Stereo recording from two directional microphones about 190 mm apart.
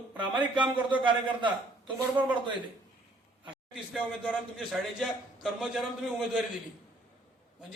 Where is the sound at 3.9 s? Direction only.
5° left (ahead or behind).